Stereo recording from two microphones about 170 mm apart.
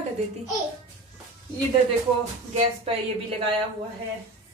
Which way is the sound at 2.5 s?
35° right (ahead or behind).